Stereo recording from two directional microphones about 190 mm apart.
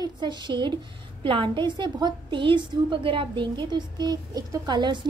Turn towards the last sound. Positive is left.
turn(degrees=-25)  # may be behind; listen again after turning